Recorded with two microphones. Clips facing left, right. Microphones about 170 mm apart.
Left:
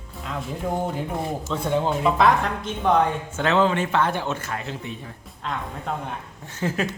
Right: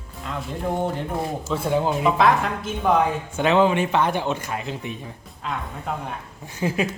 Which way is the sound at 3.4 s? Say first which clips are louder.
Right 2 dB; 15° right (ahead or behind).